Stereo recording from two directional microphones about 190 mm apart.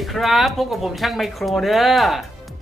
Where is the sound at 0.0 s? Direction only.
Centre (ahead or behind).